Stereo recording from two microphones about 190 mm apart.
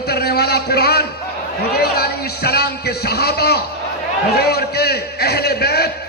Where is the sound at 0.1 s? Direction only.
55° left (ahead or behind).